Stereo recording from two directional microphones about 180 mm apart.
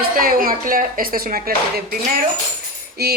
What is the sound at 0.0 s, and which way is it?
Speech, 55° right (ahead or behind).